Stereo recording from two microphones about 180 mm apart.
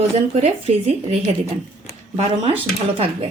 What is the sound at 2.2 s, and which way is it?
Speech, 35° right (ahead or behind).